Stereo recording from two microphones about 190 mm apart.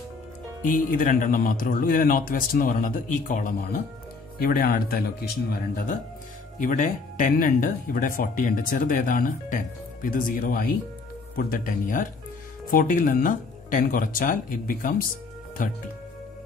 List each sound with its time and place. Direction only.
0.6 s speech: 45° left (ahead or behind)